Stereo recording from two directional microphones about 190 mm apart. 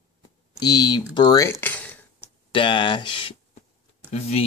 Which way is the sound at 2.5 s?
25° left (ahead or behind).